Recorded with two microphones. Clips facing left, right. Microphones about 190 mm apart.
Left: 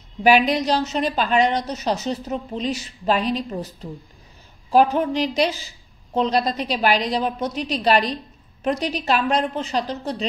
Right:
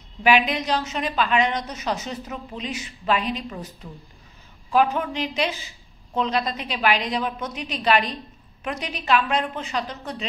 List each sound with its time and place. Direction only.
0.2 s a woman's voice: 35° left (ahead or behind)